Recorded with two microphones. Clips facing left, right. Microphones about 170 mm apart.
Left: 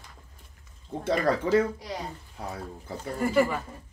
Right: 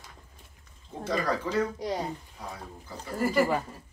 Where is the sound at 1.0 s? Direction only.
60° left (ahead or behind).